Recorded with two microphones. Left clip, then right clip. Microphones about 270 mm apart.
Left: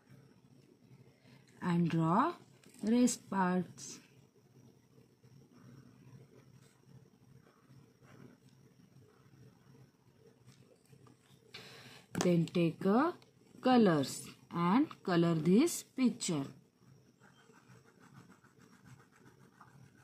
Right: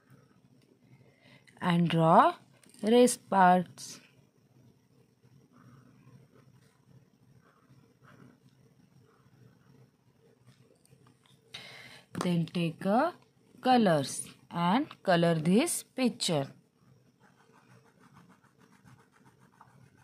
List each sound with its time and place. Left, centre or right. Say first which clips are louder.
1.6 s speech: right 8 dB; right
11.5 s a sound: right 6 dB; right
12.5 s speech: right 7 dB; right